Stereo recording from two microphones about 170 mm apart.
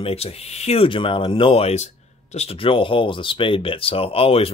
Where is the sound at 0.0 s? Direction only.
35° left (ahead or behind).